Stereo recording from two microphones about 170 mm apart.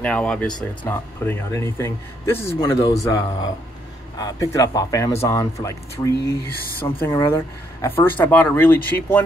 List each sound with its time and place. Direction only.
0.0 s speech: 5° left (ahead or behind)
4.2 s speech: 20° left (ahead or behind)